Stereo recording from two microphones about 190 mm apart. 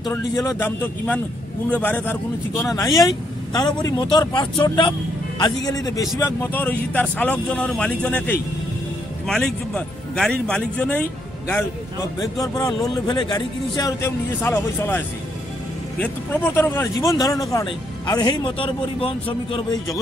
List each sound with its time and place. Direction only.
0.0 s a man's voice: 15° left (ahead or behind)
3.5 s a man's voice: 20° left (ahead or behind)
12.2 s a man's voice: 20° left (ahead or behind)